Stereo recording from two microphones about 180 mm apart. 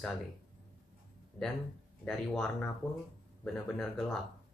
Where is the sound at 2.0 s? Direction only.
5° left (ahead or behind).